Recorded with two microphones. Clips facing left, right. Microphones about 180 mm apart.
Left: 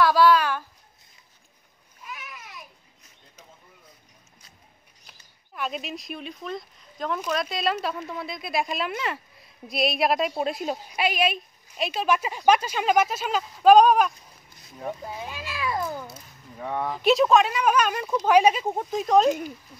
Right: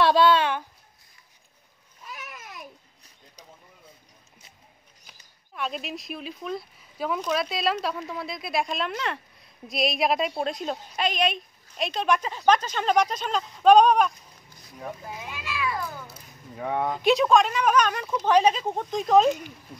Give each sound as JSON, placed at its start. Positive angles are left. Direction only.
{"t": 0.0, "sound": "a sound", "side_deg": -25}
{"t": 2.1, "sound": "babbling", "side_deg": -45}
{"t": 5.5, "sound": "speech", "side_deg": 0}
{"t": 15.1, "sound": "children playing", "side_deg": 35}
{"t": 16.5, "sound": "speech", "side_deg": -10}
{"t": 16.8, "sound": "speech", "side_deg": 0}